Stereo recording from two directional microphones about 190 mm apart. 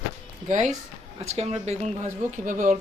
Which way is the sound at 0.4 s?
40° right (ahead or behind).